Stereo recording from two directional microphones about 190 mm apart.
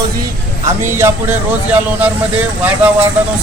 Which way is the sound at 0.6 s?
15° right (ahead or behind).